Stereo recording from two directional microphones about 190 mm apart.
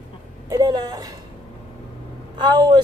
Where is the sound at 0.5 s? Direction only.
20° right (ahead or behind).